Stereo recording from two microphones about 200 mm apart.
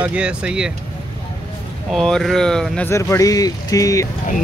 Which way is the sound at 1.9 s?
Centre (ahead or behind).